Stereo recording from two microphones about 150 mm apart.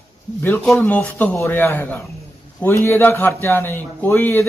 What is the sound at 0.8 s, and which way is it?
A man's voice, 10° left (ahead or behind).